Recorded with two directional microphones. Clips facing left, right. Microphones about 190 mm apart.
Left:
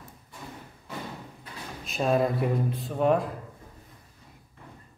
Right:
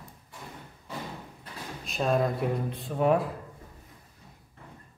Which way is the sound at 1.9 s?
Centre (ahead or behind).